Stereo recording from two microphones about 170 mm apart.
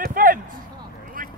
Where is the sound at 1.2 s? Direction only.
55° right (ahead or behind).